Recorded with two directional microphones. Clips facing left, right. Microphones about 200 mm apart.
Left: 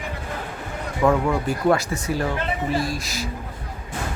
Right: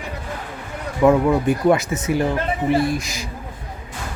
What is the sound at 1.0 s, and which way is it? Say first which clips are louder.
Speech: right 5 dB; 15° right (ahead or behind).